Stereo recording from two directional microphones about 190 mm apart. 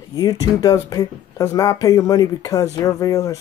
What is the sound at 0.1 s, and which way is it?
Speech, 20° left (ahead or behind).